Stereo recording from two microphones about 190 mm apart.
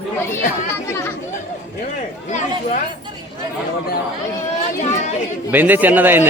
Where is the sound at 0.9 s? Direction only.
15° left (ahead or behind).